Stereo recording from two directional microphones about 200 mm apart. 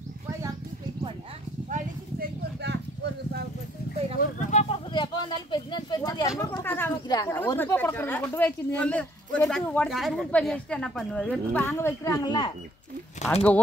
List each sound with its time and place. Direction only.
1.7 s a sound: 55° right (ahead or behind)
4.2 s speech: 35° left (ahead or behind)
4.9 s speech: 25° left (ahead or behind)
13.2 s speech: 5° left (ahead or behind)